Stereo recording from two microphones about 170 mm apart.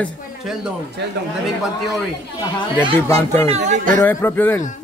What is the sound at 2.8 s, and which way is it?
Speech, 15° left (ahead or behind).